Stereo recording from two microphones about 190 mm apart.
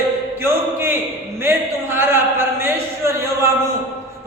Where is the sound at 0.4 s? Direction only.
15° right (ahead or behind).